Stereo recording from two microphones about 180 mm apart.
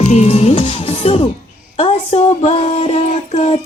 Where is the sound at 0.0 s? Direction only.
35° left (ahead or behind).